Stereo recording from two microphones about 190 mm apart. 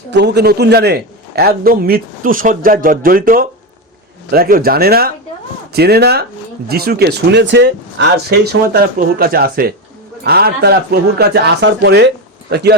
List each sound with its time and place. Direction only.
0.1 s a man's voice: 60° right (ahead or behind)